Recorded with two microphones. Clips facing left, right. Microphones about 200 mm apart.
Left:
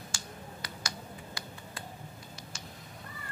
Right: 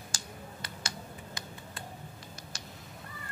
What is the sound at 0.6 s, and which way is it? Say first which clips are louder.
Computer keyboard: even; 25° right (ahead or behind).